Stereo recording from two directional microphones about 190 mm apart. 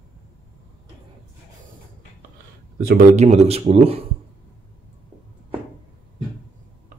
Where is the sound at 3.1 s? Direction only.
35° right (ahead or behind).